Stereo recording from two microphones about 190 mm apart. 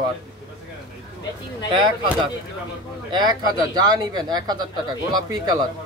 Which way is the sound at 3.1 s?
20° right (ahead or behind).